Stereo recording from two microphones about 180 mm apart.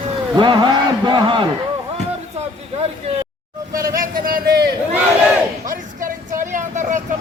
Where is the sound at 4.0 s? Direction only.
55° right (ahead or behind).